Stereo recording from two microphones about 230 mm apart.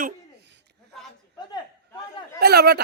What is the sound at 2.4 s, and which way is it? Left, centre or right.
Speech, right.